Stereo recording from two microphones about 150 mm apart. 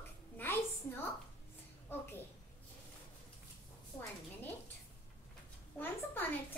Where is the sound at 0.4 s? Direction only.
15° left (ahead or behind).